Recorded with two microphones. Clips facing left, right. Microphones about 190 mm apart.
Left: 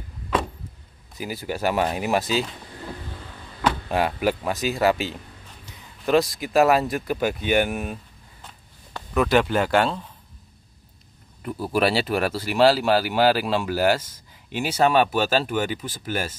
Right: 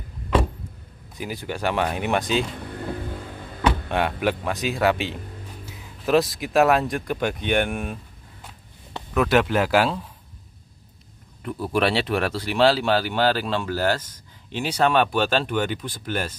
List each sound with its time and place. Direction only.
1.1 s speech: 5° left (ahead or behind)
2.6 s vehicle: 55° right (ahead or behind)
3.9 s speech: 5° left (ahead or behind)
9.1 s speech: centre (ahead or behind)
11.4 s speech: 5° left (ahead or behind)